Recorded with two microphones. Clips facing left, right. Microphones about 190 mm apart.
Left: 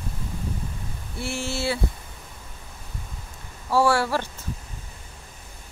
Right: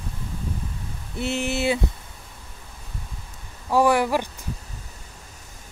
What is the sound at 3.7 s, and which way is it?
Speech, 15° right (ahead or behind).